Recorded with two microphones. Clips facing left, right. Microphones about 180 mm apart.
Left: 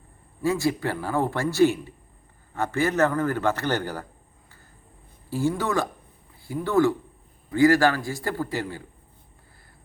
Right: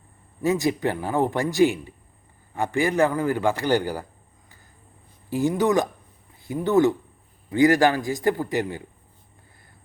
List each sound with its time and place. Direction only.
0.4 s a man's voice: 20° right (ahead or behind)
5.3 s a man's voice: 15° right (ahead or behind)